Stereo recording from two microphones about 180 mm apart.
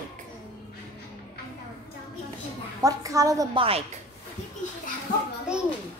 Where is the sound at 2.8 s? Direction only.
20° right (ahead or behind).